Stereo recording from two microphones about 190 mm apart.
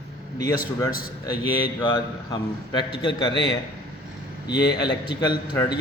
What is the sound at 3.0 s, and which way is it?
A man's voice, 25° left (ahead or behind).